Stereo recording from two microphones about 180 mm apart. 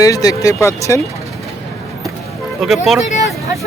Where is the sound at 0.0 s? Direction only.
20° left (ahead or behind).